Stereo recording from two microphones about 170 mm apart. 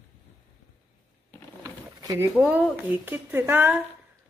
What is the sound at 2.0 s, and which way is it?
Speech, 20° right (ahead or behind).